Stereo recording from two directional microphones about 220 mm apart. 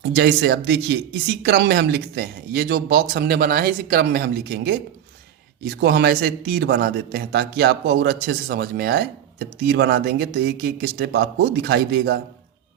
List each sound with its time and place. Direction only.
0.0 s speech: 50° right (ahead or behind)